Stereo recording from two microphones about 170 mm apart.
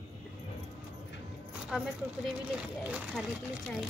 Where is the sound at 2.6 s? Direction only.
5° right (ahead or behind).